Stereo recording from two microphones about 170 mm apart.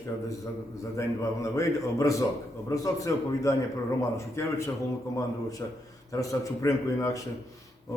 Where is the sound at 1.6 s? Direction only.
20° left (ahead or behind).